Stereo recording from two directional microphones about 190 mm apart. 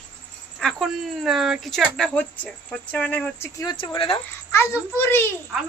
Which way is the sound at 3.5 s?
25° left (ahead or behind).